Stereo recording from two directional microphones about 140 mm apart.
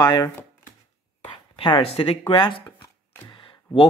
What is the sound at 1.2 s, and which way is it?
Speech, 40° left (ahead or behind).